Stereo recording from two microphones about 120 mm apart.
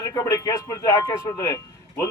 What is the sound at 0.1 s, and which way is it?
Speech, 30° left (ahead or behind).